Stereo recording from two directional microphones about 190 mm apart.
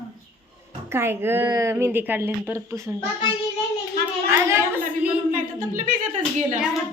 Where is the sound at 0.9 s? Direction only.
15° right (ahead or behind).